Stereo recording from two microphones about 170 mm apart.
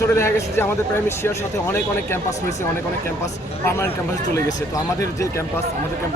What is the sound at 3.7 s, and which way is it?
Speech, 15° left (ahead or behind).